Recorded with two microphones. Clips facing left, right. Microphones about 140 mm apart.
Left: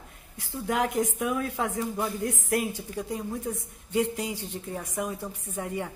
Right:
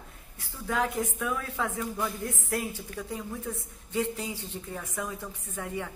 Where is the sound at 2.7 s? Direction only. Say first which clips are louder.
Left 3 dB; 15° left (ahead or behind).